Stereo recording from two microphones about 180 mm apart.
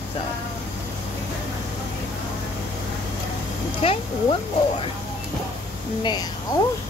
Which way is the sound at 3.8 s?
30° left (ahead or behind).